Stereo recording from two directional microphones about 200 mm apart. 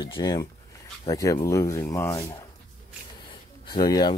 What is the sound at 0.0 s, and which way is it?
Speech, 20° left (ahead or behind).